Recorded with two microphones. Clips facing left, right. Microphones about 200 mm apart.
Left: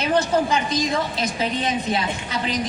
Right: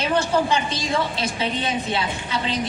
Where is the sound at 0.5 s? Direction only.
30° right (ahead or behind).